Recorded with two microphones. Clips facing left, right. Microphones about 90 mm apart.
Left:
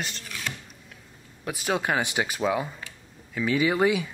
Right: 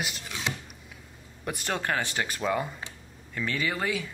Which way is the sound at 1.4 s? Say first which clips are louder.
Left 3 dB; 5° left (ahead or behind).